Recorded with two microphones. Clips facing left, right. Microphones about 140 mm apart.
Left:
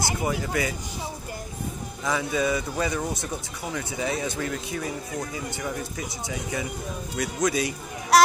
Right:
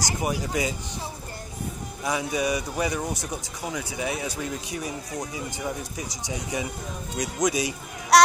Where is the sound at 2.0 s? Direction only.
15° right (ahead or behind).